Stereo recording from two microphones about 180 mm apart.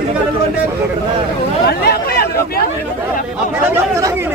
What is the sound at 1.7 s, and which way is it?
Speech, 60° left (ahead or behind).